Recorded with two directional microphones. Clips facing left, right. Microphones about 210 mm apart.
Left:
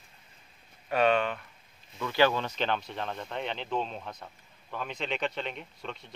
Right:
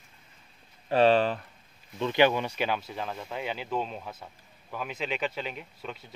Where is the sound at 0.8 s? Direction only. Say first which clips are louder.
Right 4 dB; 30° right (ahead or behind).